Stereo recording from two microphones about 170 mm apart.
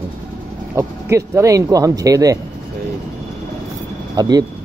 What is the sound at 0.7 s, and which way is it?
Speech, 15° right (ahead or behind).